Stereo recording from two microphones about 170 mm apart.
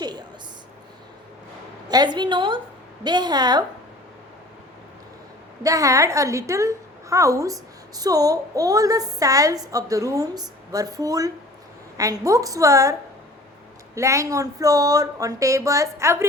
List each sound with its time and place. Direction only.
0.0 s a sound: 25° right (ahead or behind)
1.9 s a woman's voice: 25° right (ahead or behind)
5.6 s a woman's voice: 20° right (ahead or behind)